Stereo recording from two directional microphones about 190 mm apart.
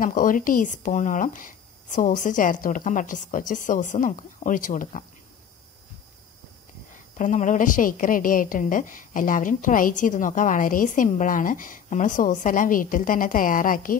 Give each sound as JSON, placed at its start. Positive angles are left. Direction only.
{"t": 0.0, "sound": "a woman's voice", "side_deg": 45}
{"t": 7.2, "sound": "a woman's voice", "side_deg": 40}